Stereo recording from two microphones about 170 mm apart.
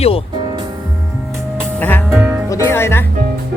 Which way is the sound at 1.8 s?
10° left (ahead or behind).